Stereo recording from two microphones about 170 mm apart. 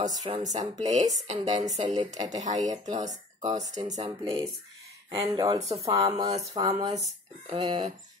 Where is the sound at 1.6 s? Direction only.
45° right (ahead or behind).